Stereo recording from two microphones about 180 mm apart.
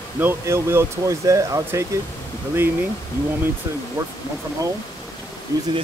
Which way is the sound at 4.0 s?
20° right (ahead or behind).